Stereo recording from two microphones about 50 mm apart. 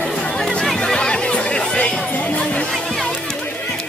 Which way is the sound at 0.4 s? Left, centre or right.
Centre.